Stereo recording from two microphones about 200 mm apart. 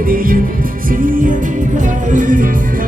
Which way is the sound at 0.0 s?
45° right (ahead or behind).